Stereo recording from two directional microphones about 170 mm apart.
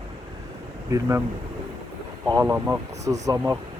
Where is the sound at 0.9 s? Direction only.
15° right (ahead or behind).